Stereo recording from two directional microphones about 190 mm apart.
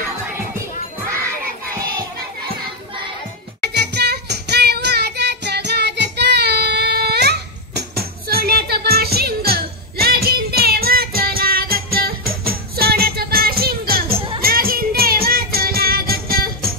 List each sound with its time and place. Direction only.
3.6 s child singing: 60° right (ahead or behind)
14.1 s music: 30° right (ahead or behind)
14.4 s music: 50° right (ahead or behind)